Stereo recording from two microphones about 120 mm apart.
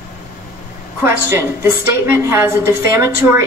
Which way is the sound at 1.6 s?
25° right (ahead or behind).